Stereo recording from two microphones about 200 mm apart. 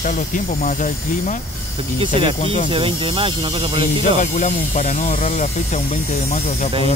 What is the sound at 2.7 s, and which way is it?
Speech, 25° right (ahead or behind).